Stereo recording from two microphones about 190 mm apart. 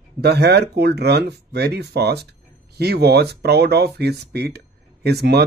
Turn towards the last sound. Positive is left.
turn(degrees=-60)  # may be behind; listen again after turning